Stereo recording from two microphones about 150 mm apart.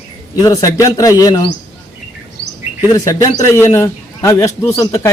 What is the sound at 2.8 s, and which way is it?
Speech, 25° left (ahead or behind).